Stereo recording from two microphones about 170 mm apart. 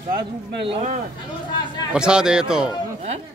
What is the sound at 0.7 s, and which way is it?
Speech, 40° right (ahead or behind).